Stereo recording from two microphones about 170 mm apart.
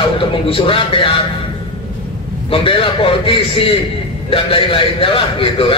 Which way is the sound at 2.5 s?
30° left (ahead or behind).